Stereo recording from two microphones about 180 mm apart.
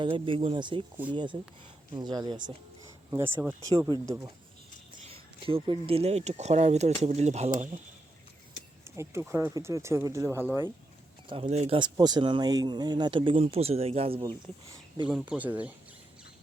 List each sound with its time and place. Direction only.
0.0 s speech: 30° right (ahead or behind)
5.0 s speech: 30° right (ahead or behind)
9.0 s speech: 15° right (ahead or behind)
11.4 s speech: 35° right (ahead or behind)
15.1 s speech: 5° right (ahead or behind)